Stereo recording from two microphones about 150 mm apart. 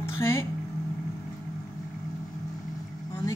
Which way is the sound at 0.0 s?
15° left (ahead or behind).